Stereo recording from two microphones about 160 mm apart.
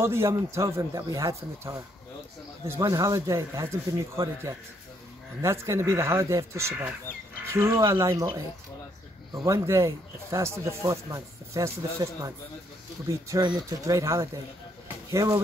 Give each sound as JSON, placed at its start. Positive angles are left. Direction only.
{"t": 0.0, "sound": "a man's voice", "side_deg": -15}
{"t": 13.3, "sound": "speech", "side_deg": -25}